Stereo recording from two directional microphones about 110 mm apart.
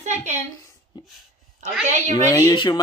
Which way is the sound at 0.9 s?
40° left (ahead or behind).